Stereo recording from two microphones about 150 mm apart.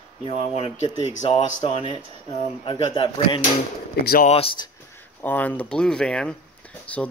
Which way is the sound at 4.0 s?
90° left.